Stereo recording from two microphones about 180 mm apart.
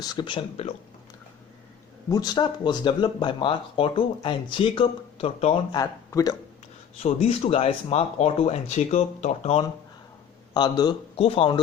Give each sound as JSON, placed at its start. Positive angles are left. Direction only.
{"t": 0.0, "sound": "speech", "side_deg": 25}
{"t": 2.0, "sound": "speech", "side_deg": 20}
{"t": 5.7, "sound": "speech", "side_deg": 20}
{"t": 7.0, "sound": "speech", "side_deg": 35}
{"t": 10.5, "sound": "speech", "side_deg": 25}